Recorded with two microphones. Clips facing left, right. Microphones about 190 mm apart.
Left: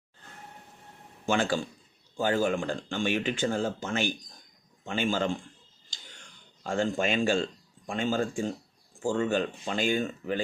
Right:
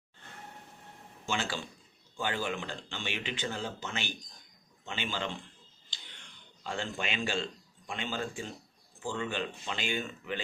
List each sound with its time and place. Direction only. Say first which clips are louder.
1.2 s speech: left 8 dB; 50° left (ahead or behind)
5.9 s a sound: left 3 dB; 45° left (ahead or behind)
7.9 s speech: left 8 dB; 45° left (ahead or behind)